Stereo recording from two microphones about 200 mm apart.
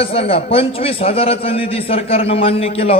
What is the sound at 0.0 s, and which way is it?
A man's voice, 30° left (ahead or behind).